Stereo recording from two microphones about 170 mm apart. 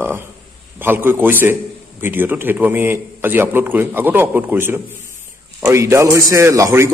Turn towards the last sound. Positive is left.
turn(degrees=-15)  # may be behind; listen again after turning